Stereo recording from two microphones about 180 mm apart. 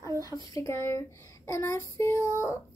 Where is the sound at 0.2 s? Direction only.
20° left (ahead or behind).